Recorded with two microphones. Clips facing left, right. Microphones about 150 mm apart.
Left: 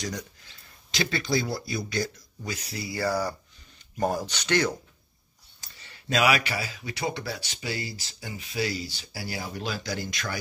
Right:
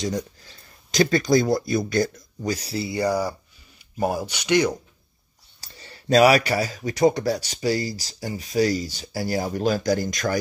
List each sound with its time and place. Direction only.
0.9 s speech: 45° right (ahead or behind); by 4.7 s 15° right (ahead or behind)
5.6 s speech: 35° right (ahead or behind)